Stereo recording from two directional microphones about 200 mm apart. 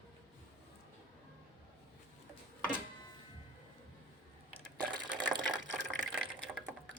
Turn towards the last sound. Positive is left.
turn(degrees=-20)  # may be behind; listen again after turning